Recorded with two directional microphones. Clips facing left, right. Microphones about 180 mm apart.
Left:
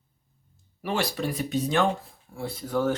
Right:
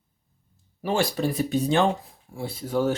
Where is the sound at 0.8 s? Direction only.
30° right (ahead or behind).